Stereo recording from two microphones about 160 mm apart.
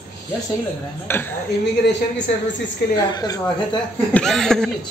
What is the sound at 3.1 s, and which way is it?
Speech, 25° left (ahead or behind).